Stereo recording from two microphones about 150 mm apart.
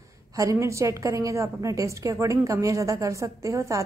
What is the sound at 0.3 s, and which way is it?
A woman's voice, 20° right (ahead or behind).